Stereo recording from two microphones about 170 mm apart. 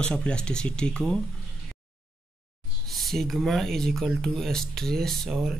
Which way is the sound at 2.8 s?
Centre (ahead or behind).